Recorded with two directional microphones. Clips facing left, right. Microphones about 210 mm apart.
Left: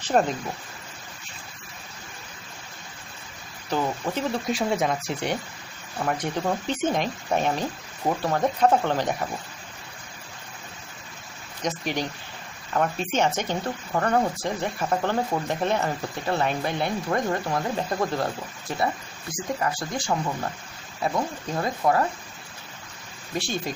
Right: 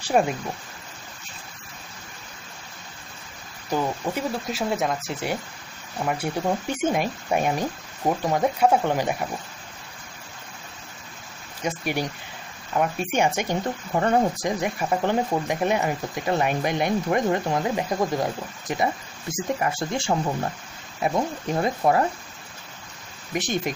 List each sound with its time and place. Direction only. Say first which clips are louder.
0.0 s speech: right 1 dB; 10° right (ahead or behind)
3.7 s speech: right 1 dB; 10° right (ahead or behind)
11.6 s speech: right 1 dB; 10° right (ahead or behind)
23.3 s speech: right 3 dB; 20° right (ahead or behind)